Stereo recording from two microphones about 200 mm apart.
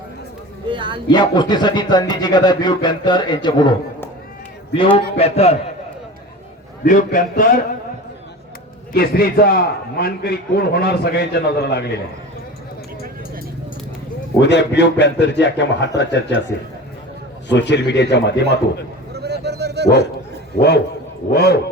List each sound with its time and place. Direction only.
0.7 s music: 25° right (ahead or behind)
1.1 s speech: 20° left (ahead or behind)
4.7 s speech: 25° left (ahead or behind)
6.8 s speech: 40° left (ahead or behind)
8.9 s a man's voice: 50° left (ahead or behind)
14.3 s a man's voice: 60° left (ahead or behind)
17.5 s a man's voice: 60° left (ahead or behind)
19.1 s dog: 55° right (ahead or behind)
20.6 s a man's voice: 55° left (ahead or behind)